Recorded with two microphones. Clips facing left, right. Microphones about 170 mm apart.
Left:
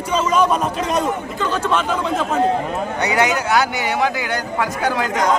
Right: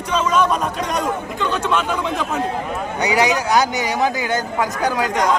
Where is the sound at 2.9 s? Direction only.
15° right (ahead or behind).